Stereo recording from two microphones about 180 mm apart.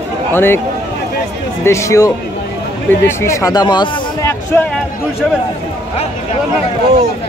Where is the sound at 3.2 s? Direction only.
15° left (ahead or behind).